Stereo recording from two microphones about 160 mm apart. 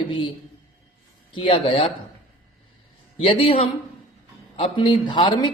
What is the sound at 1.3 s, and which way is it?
Speech, 35° left (ahead or behind).